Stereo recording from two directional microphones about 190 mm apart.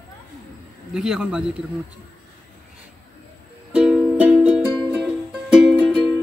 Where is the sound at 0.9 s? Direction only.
5° right (ahead or behind).